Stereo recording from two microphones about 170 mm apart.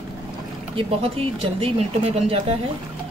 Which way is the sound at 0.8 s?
35° right (ahead or behind).